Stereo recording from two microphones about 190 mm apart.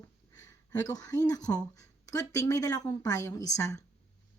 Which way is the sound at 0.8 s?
20° left (ahead or behind).